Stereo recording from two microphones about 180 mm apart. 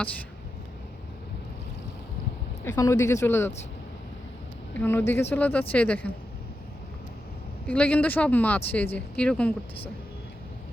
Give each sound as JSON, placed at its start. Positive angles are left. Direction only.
{"t": 2.6, "sound": "speech", "side_deg": 20}
{"t": 4.7, "sound": "speech", "side_deg": 10}
{"t": 7.7, "sound": "speech", "side_deg": 5}